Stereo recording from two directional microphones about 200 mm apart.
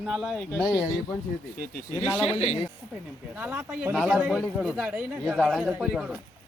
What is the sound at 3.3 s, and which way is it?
A man's voice, 5° right (ahead or behind).